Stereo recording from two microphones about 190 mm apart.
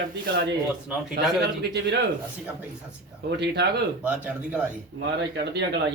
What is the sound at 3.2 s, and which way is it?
Speech, 60° right (ahead or behind).